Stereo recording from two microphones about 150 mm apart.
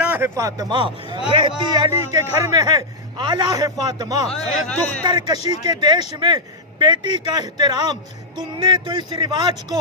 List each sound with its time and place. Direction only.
0.0 s a man's voice: 15° right (ahead or behind)
4.3 s speech: 5° left (ahead or behind)
5.0 s a man's voice: 30° right (ahead or behind)